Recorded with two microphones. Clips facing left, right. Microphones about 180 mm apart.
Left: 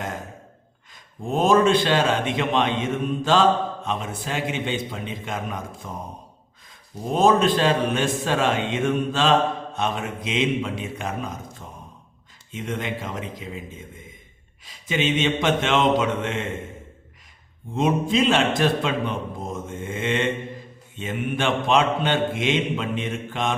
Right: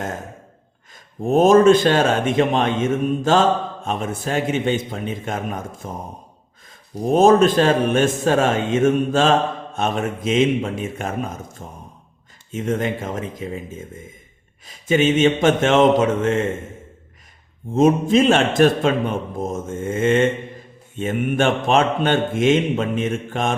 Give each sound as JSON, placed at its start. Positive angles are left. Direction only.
{"t": 1.2, "sound": "speech", "side_deg": -45}
{"t": 7.1, "sound": "speech", "side_deg": -45}
{"t": 12.5, "sound": "speech", "side_deg": -45}
{"t": 17.7, "sound": "speech", "side_deg": -45}